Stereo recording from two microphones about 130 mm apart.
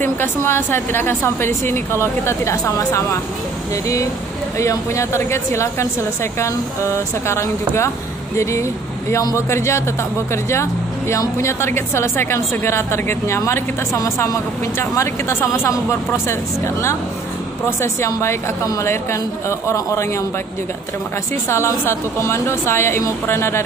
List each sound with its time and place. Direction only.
0.0 s a woman's voice: 15° left (ahead or behind)
4.6 s a woman's voice: 20° left (ahead or behind)
21.5 s a woman's voice: 20° left (ahead or behind)